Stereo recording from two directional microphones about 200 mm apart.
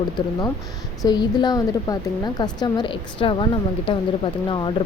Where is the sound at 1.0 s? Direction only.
20° left (ahead or behind).